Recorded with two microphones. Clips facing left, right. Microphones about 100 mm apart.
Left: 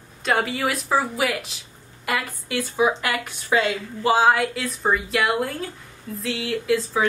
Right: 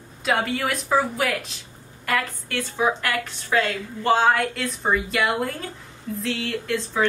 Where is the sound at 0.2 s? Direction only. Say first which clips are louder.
Left 1 dB; centre (ahead or behind).